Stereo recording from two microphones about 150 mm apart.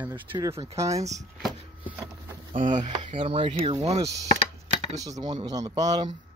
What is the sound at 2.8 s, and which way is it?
Speech, 35° right (ahead or behind).